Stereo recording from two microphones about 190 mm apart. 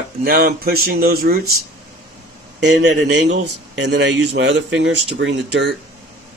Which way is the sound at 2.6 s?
65° right (ahead or behind).